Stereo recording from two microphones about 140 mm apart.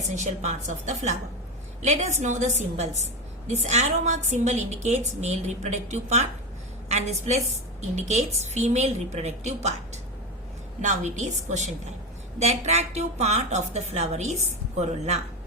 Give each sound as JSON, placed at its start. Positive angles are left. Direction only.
{"t": 0.2, "sound": "a woman's voice", "side_deg": -60}